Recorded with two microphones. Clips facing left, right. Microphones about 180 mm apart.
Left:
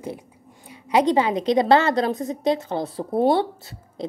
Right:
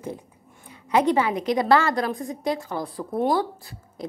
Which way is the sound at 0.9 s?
15° left (ahead or behind).